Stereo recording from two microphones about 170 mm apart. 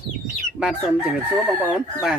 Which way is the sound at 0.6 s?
5° right (ahead or behind).